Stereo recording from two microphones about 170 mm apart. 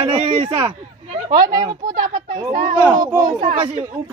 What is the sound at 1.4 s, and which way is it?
Speech, 25° right (ahead or behind).